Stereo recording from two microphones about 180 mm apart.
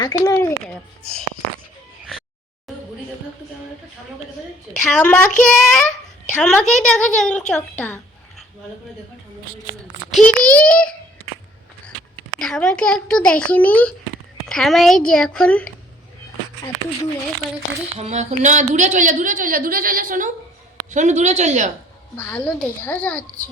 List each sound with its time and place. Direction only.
0.0 s speech: 20° left (ahead or behind)
4.7 s a woman's voice: 5° left (ahead or behind)
10.1 s a woman's voice: 5° left (ahead or behind)
12.4 s a woman's voice: 5° left (ahead or behind)
17.9 s a woman's voice: 40° right (ahead or behind)
22.3 s a woman's voice: 5° left (ahead or behind)